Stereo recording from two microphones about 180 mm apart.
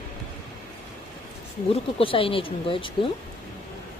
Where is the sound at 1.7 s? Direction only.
30° left (ahead or behind).